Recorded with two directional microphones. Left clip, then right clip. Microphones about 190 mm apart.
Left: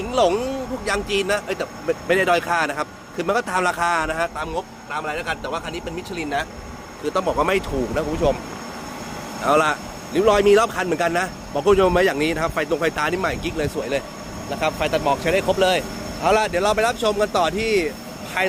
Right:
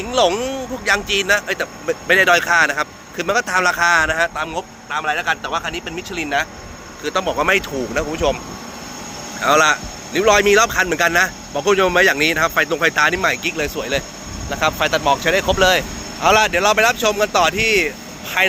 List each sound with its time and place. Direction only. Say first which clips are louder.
0.1 s a man's voice: right 3 dB; 5° left (ahead or behind)
7.0 s a man's voice: right 2 dB; 15° left (ahead or behind)
9.4 s a man's voice: right 4 dB; 10° left (ahead or behind)